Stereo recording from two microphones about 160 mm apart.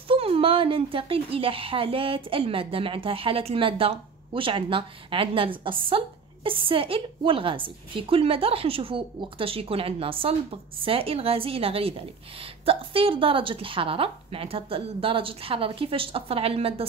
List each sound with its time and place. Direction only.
0.1 s a woman's voice: 35° right (ahead or behind)